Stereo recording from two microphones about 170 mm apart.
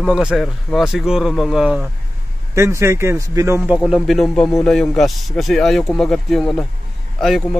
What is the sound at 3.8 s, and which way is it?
A man's voice, centre (ahead or behind).